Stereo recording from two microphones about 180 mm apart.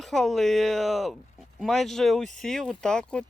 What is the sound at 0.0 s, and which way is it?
Speech, centre (ahead or behind).